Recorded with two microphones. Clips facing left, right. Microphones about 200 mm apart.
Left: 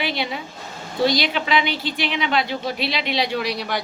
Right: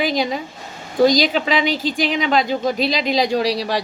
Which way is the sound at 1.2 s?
40° right (ahead or behind).